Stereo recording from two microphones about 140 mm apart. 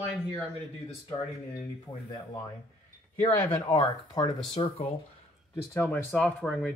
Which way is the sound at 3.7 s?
35° left (ahead or behind).